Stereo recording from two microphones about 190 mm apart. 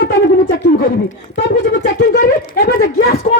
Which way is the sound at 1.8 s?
50° left (ahead or behind).